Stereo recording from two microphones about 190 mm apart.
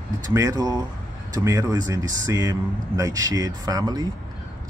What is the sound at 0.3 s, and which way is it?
Speech, 15° right (ahead or behind).